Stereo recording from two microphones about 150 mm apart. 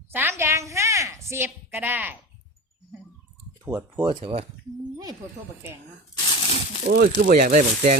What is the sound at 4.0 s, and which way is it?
Speech, 30° right (ahead or behind).